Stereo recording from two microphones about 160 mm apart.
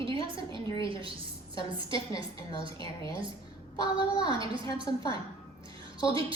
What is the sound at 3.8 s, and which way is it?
A woman's voice, 25° left (ahead or behind).